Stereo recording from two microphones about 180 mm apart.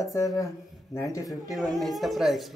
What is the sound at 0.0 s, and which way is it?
Speech, 20° left (ahead or behind).